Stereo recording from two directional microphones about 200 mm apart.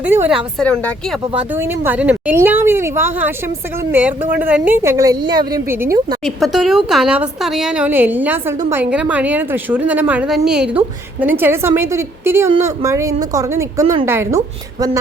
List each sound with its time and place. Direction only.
0.0 s a woman's voice: 10° right (ahead or behind)
1.4 s a woman's voice: 10° right (ahead or behind)
6.2 s a woman's voice: centre (ahead or behind)